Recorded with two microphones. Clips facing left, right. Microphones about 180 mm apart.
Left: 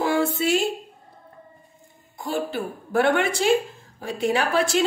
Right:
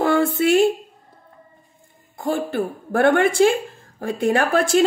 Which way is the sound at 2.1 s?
55° right (ahead or behind).